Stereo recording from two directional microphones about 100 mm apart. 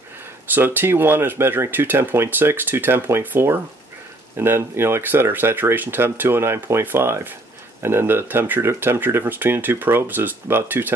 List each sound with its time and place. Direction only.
0.5 s speech: 20° right (ahead or behind)